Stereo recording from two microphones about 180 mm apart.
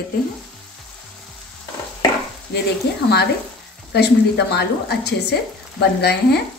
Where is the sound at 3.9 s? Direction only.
65° left (ahead or behind).